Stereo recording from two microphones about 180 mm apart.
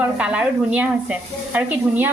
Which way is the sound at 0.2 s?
5° right (ahead or behind).